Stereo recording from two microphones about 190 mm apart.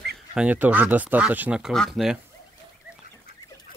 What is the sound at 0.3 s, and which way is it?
Speech, 5° right (ahead or behind).